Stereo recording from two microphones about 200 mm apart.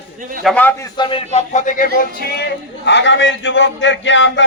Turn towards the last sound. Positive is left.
turn(degrees=65)  # may be behind; listen again after turning